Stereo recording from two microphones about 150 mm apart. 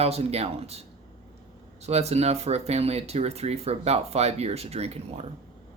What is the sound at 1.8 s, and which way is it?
Speech, 45° right (ahead or behind).